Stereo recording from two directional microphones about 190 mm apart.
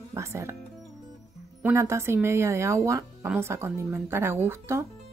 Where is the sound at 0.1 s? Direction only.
15° right (ahead or behind).